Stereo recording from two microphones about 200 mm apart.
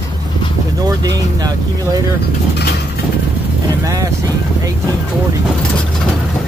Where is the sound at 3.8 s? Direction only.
15° right (ahead or behind).